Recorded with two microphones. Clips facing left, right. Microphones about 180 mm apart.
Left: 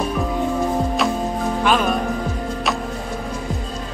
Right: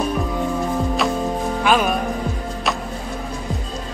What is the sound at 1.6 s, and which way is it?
Music, 5° right (ahead or behind).